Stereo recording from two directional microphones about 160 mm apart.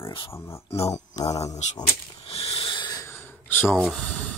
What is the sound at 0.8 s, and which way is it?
Speech, 45° left (ahead or behind).